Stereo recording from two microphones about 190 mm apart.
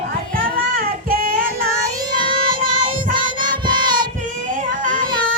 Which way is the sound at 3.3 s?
45° right (ahead or behind).